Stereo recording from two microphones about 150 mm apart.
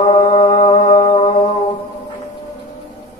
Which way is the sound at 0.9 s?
35° left (ahead or behind).